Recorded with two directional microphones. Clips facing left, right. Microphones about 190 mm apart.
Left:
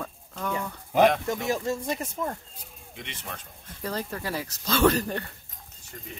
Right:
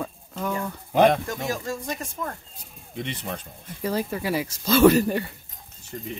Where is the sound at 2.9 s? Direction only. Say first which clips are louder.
Right 9 dB; 35° right (ahead or behind).